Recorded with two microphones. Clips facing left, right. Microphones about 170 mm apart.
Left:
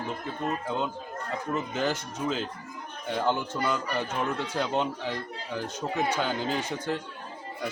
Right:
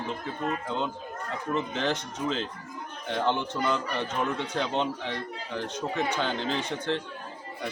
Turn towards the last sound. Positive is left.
turn(degrees=10)  # may be behind; listen again after turning